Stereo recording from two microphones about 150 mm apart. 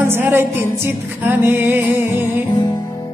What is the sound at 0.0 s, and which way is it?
Music, 15° right (ahead or behind).